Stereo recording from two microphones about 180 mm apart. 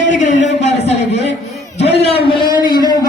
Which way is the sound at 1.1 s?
75° left (ahead or behind).